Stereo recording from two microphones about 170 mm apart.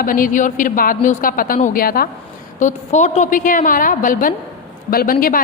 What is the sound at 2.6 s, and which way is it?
A woman's voice, 45° left (ahead or behind).